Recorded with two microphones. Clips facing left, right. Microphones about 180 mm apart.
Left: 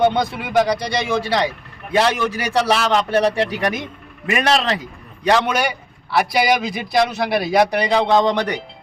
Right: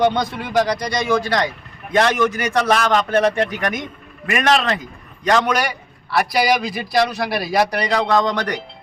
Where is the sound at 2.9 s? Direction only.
30° left (ahead or behind).